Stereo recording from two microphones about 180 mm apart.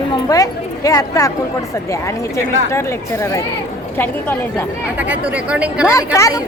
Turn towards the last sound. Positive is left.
turn(degrees=20)  # may be behind; listen again after turning